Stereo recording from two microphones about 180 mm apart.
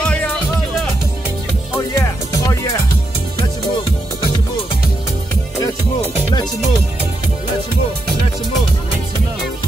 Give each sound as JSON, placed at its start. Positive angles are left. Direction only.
{"t": 2.0, "sound": "music", "side_deg": 15}